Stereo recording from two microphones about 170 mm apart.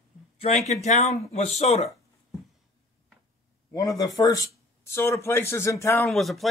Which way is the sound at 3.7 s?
20° left (ahead or behind).